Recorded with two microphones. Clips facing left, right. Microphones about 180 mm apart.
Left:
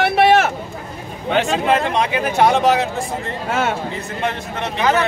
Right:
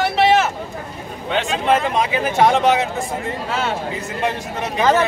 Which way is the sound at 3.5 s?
50° left (ahead or behind).